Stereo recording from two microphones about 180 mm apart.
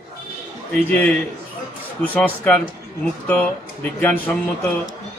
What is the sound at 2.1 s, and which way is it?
Speech, 10° left (ahead or behind).